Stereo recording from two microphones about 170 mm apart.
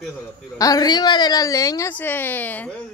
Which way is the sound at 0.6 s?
20° left (ahead or behind).